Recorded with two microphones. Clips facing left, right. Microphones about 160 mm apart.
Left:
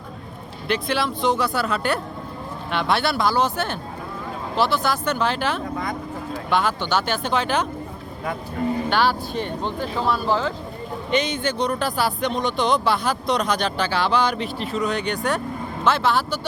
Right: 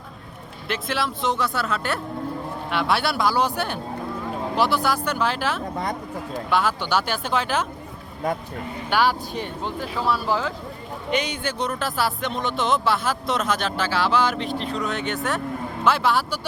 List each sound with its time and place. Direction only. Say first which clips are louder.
0.7 s speech: left 3 dB; centre (ahead or behind)
5.7 s speech: even; 35° right (ahead or behind)
6.5 s speech: left 1 dB; 5° right (ahead or behind)
8.9 s speech: left 1 dB; 10° right (ahead or behind)